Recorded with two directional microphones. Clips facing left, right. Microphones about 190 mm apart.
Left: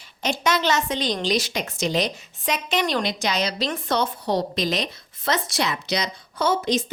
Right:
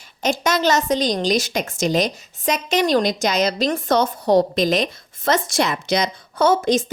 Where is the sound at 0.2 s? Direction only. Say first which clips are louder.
Right 3 dB; 45° right (ahead or behind).